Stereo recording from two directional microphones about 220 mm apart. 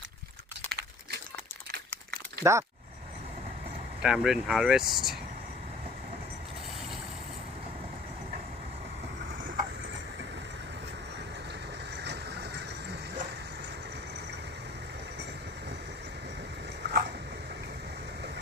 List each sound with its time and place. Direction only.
2.4 s speech: 15° right (ahead or behind)
4.0 s speech: centre (ahead or behind)
16.8 s a sound: 50° right (ahead or behind)